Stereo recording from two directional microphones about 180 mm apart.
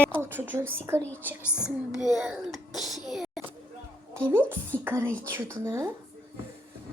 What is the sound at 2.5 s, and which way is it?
Cough, centre (ahead or behind).